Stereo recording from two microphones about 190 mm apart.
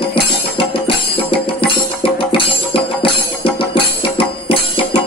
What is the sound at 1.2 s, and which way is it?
Music, 30° left (ahead or behind).